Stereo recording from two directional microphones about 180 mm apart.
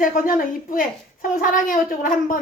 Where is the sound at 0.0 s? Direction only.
50° left (ahead or behind).